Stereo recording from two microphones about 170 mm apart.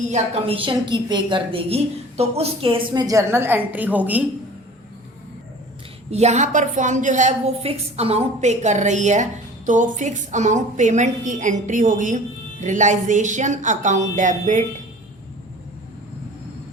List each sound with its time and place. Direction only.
0.1 s a woman's voice: 35° right (ahead or behind); by 4.2 s 10° right (ahead or behind)
6.1 s a woman's voice: 40° right (ahead or behind)